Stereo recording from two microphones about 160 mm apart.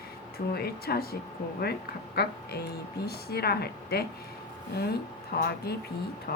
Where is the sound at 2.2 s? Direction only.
80° left.